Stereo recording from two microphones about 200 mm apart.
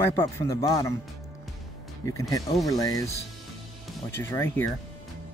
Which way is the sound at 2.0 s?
15° left (ahead or behind).